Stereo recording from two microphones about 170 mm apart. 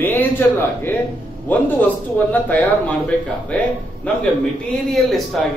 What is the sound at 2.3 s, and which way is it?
Speech, 10° left (ahead or behind).